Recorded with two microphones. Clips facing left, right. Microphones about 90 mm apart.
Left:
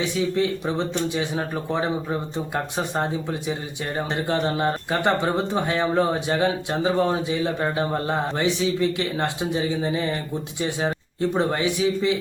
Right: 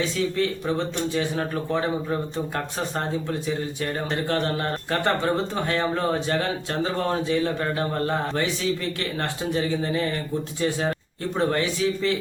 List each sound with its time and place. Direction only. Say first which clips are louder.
0.0 s speech: left 1 dB; 15° left (ahead or behind)
4.1 s speech: left 2 dB; 15° left (ahead or behind)